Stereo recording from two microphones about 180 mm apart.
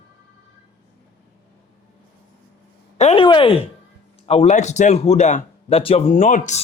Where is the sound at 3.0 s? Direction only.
40° left (ahead or behind).